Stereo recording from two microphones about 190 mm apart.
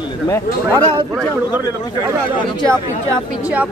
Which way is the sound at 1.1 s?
15° right (ahead or behind).